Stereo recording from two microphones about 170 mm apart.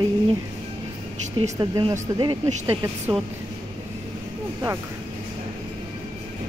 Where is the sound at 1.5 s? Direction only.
25° right (ahead or behind).